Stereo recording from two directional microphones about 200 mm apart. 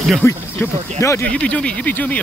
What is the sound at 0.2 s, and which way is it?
Speech, 10° left (ahead or behind).